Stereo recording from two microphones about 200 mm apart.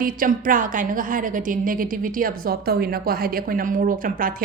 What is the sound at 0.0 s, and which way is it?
A woman's voice, 45° right (ahead or behind).